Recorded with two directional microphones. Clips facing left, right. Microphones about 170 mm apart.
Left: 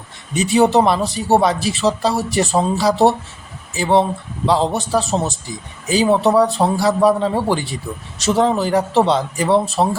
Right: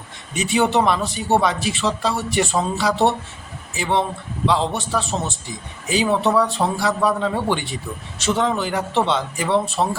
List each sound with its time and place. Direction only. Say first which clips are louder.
0.3 s a man's voice: left 5 dB; 35° left (ahead or behind)